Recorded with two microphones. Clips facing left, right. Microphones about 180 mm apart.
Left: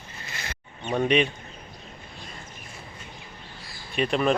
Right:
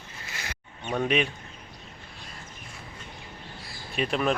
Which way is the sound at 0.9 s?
Centre (ahead or behind).